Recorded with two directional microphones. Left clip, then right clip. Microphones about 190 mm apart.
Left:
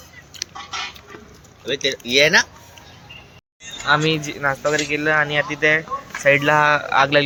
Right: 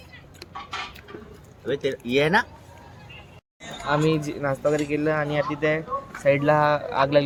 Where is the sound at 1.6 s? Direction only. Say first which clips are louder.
Left 4 dB; 60° right (ahead or behind).